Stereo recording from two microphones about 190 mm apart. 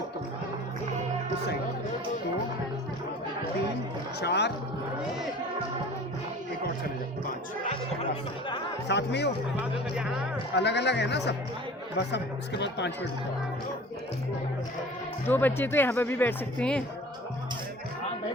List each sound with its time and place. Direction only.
4.2 s speech: 60° left (ahead or behind)
8.9 s speech: 60° left (ahead or behind)
10.5 s speech: 60° left (ahead or behind)
15.3 s speech: 10° left (ahead or behind)